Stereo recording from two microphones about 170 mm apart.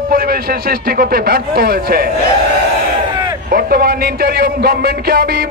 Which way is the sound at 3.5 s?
65° right (ahead or behind).